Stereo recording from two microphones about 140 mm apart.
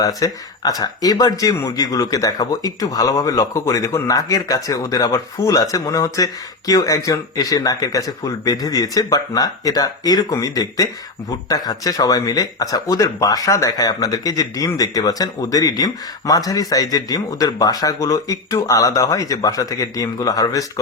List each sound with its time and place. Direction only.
0.0 s speech: 25° left (ahead or behind)